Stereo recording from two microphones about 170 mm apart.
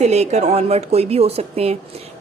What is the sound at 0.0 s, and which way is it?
Speech, 40° right (ahead or behind).